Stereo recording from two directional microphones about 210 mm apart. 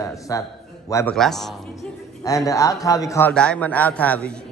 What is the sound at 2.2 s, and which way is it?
A man's voice, 15° left (ahead or behind).